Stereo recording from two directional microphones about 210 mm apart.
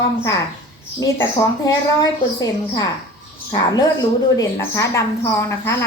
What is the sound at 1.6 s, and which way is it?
A woman's voice, 15° left (ahead or behind).